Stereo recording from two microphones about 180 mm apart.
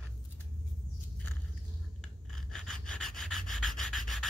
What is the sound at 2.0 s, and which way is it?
Rub, centre (ahead or behind).